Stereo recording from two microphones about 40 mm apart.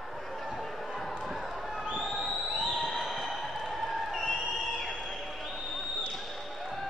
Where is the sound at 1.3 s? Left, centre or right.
Centre.